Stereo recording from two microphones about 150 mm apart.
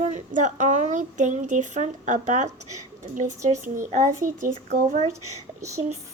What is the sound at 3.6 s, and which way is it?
Speech, 55° right (ahead or behind).